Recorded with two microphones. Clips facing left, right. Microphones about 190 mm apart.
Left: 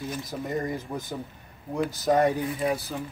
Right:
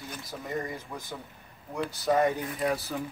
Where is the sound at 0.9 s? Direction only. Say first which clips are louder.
Left 7 dB; 35° left (ahead or behind).